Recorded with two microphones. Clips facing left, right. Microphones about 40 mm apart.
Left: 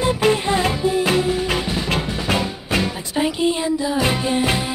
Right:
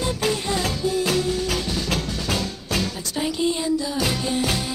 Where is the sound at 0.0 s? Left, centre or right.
Left.